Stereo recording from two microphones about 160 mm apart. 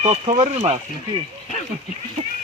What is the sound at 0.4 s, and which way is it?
Speech, 45° right (ahead or behind).